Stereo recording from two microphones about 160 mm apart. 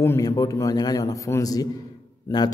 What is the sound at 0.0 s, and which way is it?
A man's voice, 20° left (ahead or behind).